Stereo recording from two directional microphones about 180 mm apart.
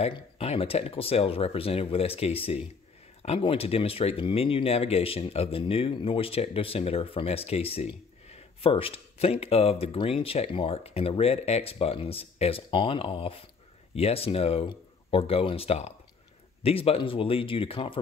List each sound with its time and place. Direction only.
0.0 s speech: 35° left (ahead or behind)